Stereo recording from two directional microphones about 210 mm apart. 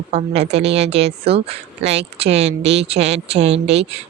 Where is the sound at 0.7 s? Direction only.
30° right (ahead or behind).